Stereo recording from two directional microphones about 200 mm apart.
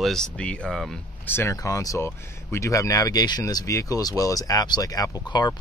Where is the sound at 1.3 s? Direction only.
15° left (ahead or behind).